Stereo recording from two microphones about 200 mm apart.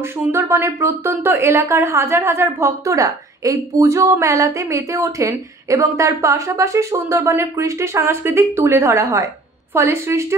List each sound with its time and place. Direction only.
0.0 s speech: 15° right (ahead or behind)